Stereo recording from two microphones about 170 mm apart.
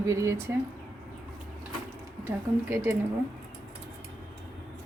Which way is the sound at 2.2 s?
15° right (ahead or behind).